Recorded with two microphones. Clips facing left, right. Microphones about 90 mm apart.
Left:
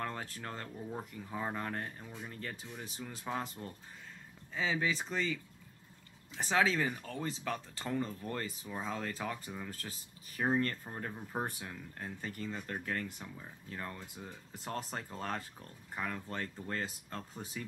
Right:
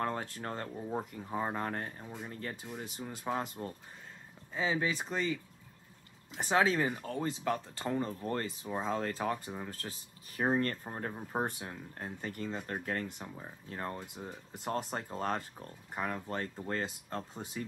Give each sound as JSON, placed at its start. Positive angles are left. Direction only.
{"t": 0.0, "sound": "speech", "side_deg": -30}
{"t": 8.5, "sound": "speech", "side_deg": -25}
{"t": 14.0, "sound": "speech", "side_deg": -20}